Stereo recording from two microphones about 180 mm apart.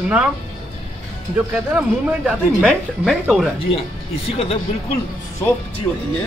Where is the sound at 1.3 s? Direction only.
10° right (ahead or behind).